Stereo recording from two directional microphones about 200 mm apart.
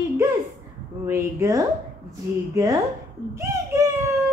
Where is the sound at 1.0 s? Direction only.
15° right (ahead or behind).